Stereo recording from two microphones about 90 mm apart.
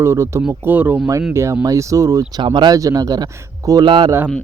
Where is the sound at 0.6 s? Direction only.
20° right (ahead or behind).